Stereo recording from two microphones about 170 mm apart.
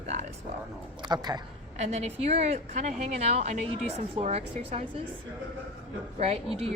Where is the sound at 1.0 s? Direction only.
25° right (ahead or behind).